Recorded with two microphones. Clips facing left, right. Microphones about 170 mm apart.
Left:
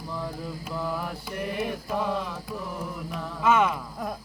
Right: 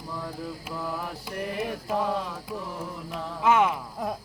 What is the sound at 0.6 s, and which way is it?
Mantra, centre (ahead or behind).